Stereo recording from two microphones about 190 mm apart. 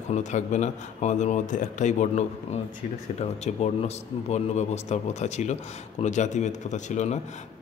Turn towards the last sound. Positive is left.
turn(degrees=40)  # may be behind; listen again after turning